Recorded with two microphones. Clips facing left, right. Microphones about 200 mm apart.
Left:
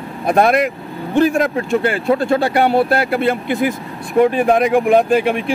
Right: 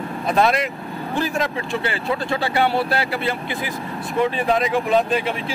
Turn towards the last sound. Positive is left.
turn(degrees=60)  # may be behind; listen again after turning